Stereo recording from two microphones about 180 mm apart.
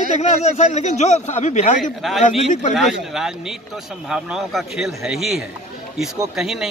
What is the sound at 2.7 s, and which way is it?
A man's voice, 5° right (ahead or behind).